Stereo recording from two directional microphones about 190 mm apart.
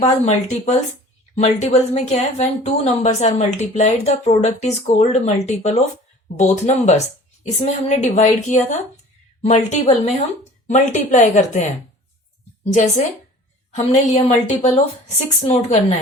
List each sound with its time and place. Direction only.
0.0 s speech: 35° left (ahead or behind)
12.7 s speech: 40° left (ahead or behind)